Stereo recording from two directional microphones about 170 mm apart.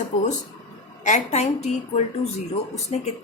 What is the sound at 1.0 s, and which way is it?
A woman's voice, 40° left (ahead or behind).